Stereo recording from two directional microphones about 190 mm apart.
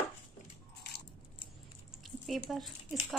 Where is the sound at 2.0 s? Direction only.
Centre (ahead or behind).